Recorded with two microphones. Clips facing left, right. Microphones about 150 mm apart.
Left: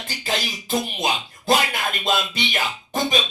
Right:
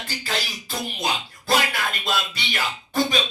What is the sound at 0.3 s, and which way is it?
Speech, 20° left (ahead or behind).